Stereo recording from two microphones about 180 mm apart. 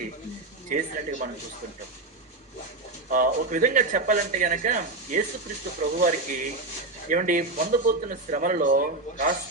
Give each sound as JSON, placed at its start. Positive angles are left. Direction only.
{"t": 0.7, "sound": "speech", "side_deg": -45}
{"t": 3.1, "sound": "speech", "side_deg": -50}